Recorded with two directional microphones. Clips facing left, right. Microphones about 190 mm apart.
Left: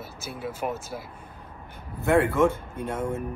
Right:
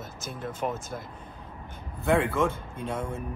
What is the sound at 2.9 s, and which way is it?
Speech, centre (ahead or behind).